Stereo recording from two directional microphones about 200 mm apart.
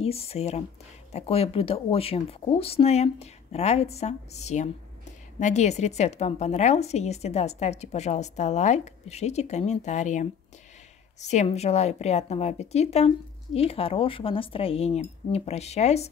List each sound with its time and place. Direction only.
0.0 s a woman's voice: 30° left (ahead or behind)